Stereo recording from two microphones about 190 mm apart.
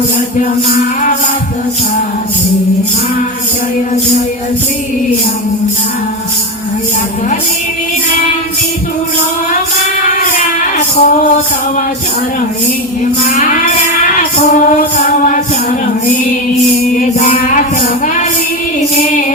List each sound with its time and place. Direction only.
10.8 s music: 40° left (ahead or behind)
14.2 s child singing: 45° left (ahead or behind)
16.9 s music: 40° left (ahead or behind)